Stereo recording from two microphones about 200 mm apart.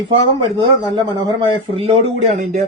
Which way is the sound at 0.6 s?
20° right (ahead or behind).